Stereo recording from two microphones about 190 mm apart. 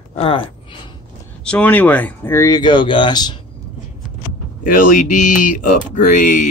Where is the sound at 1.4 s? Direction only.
5° left (ahead or behind); by 3.3 s 20° left (ahead or behind).